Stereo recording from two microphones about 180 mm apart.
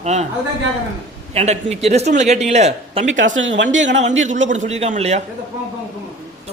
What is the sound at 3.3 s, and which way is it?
Speech, 85° right.